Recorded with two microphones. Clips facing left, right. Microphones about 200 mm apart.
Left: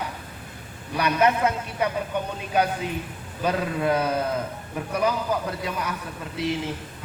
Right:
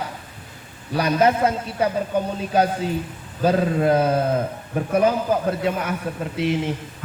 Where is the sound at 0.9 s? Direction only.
35° right (ahead or behind).